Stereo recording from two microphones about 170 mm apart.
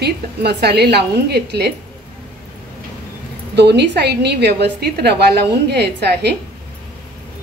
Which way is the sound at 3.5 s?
80° right.